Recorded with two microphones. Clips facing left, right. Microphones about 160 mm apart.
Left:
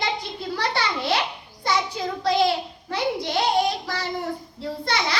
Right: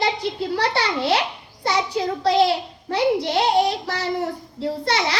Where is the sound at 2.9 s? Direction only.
30° right (ahead or behind).